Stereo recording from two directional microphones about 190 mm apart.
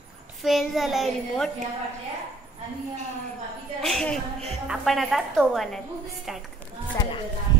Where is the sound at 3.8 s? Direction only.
Centre (ahead or behind).